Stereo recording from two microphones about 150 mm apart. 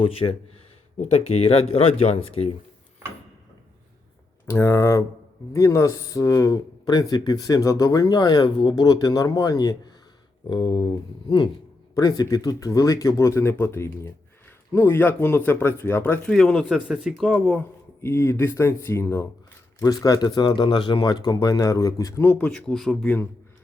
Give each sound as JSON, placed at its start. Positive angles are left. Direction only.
{"t": 0.0, "sound": "speech", "side_deg": 40}
{"t": 4.4, "sound": "speech", "side_deg": 15}